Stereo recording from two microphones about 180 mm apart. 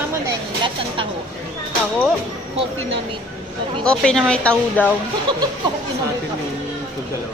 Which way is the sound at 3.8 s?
5° left (ahead or behind).